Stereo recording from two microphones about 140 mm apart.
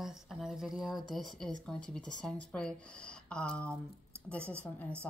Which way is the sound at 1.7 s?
5° left (ahead or behind).